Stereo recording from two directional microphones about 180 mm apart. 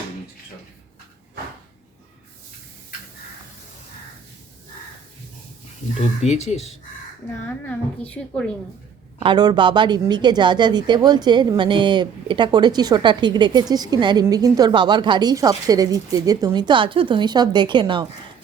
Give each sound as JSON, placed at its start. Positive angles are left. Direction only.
{"t": 6.2, "sound": "speech", "side_deg": 40}
{"t": 7.4, "sound": "speech", "side_deg": 10}
{"t": 9.2, "sound": "speech", "side_deg": -25}